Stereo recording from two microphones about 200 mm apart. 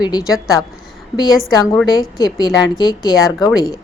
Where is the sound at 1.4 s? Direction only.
15° left (ahead or behind).